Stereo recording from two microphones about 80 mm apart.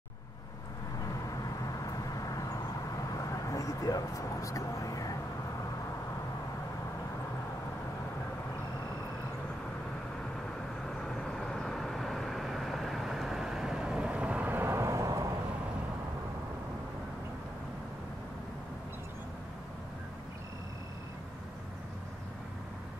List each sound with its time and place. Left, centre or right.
1.4 s vehicle: left
10.9 s vehicle: centre; by 15.3 s right